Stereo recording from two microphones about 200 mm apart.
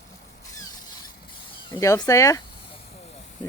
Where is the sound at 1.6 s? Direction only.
20° left (ahead or behind).